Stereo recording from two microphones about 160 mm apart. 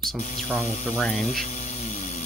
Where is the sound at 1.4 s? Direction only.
45° left (ahead or behind).